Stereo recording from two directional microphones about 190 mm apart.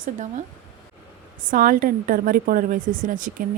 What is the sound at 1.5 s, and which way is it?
Speech, 45° right (ahead or behind).